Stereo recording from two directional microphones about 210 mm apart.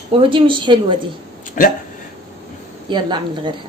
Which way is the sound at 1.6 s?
40° left (ahead or behind).